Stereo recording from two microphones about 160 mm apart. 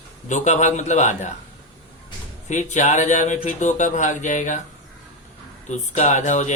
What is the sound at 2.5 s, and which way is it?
Speech, 50° left (ahead or behind).